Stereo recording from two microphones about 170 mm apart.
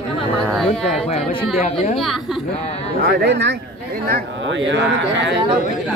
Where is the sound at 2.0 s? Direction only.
Centre (ahead or behind).